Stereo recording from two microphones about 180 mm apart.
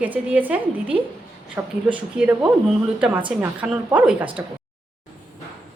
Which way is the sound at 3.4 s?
10° right (ahead or behind).